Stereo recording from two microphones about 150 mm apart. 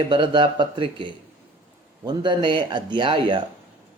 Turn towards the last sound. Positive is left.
turn(degrees=-35)  # may be behind; listen again after turning